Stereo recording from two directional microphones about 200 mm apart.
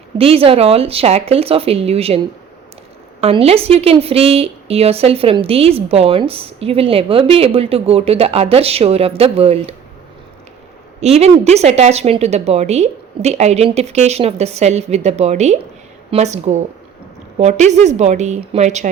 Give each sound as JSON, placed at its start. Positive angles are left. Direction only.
{"t": 0.2, "sound": "a woman's voice", "side_deg": -30}
{"t": 11.0, "sound": "speech", "side_deg": -30}